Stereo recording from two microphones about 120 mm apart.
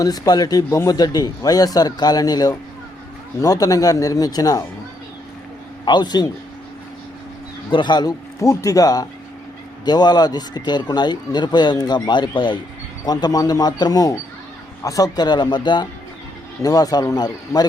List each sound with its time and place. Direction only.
0.0 s a man's voice: 35° left (ahead or behind)
5.8 s a man's voice: 35° left (ahead or behind)
7.7 s a man's voice: 40° left (ahead or behind)